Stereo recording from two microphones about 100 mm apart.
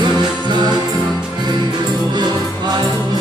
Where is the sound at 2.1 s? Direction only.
45° right (ahead or behind).